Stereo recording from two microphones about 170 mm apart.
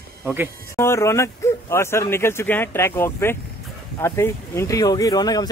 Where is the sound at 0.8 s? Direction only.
15° left (ahead or behind).